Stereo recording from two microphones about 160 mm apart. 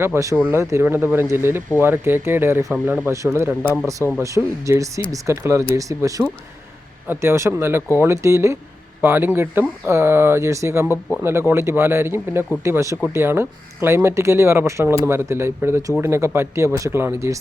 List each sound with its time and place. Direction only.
0.0 s speech: 15° right (ahead or behind)